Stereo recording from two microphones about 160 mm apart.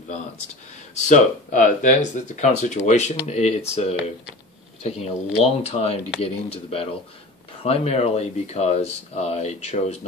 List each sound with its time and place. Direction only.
1.0 s speech: 50° left (ahead or behind)